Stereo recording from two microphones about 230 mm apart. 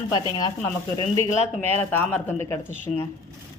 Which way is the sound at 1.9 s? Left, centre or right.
Centre.